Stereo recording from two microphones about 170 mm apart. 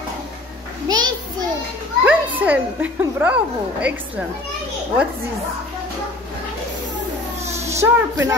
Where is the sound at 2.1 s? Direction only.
10° right (ahead or behind).